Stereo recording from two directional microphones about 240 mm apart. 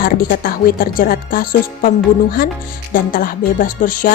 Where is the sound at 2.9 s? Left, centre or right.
Left.